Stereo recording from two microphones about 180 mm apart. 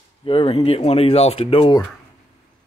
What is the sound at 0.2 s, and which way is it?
Speech, 30° left (ahead or behind).